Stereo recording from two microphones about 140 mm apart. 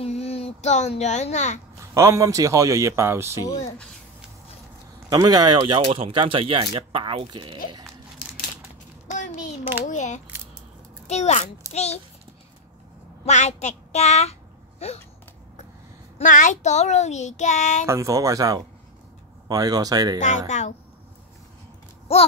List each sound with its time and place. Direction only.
0.0 s a child's voice: 45° left (ahead or behind)
2.0 s speech: 20° right (ahead or behind)
5.1 s speech: 25° right (ahead or behind)
9.0 s a sound: 65° left (ahead or behind)
9.8 s a child's voice: 60° left (ahead or behind)
13.2 s a child's voice: 55° left (ahead or behind)
16.2 s a child's voice: 70° left (ahead or behind)
17.8 s speech: 20° right (ahead or behind)
20.2 s a child's voice: 60° left (ahead or behind)